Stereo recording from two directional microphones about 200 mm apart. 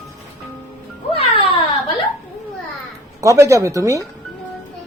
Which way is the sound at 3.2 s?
15° right (ahead or behind).